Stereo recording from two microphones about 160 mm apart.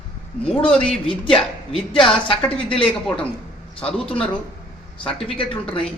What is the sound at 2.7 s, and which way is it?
Speech, 5° left (ahead or behind).